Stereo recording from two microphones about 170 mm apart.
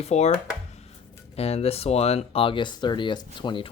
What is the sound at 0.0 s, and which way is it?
Speech, 40° left (ahead or behind).